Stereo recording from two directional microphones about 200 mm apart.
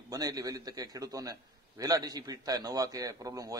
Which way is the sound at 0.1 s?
15° right (ahead or behind).